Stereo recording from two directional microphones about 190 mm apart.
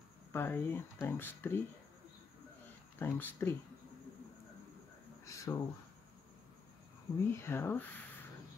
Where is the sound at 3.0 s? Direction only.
10° left (ahead or behind).